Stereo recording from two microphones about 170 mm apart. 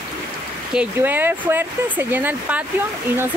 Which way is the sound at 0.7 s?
10° right (ahead or behind).